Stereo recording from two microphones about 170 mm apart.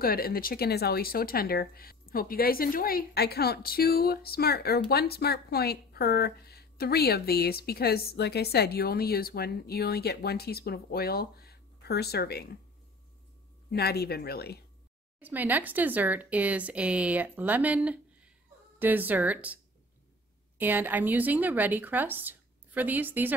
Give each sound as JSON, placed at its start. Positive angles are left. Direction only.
{"t": 0.0, "sound": "speech", "side_deg": 60}
{"t": 13.7, "sound": "speech", "side_deg": 70}
{"t": 15.1, "sound": "speech", "side_deg": -10}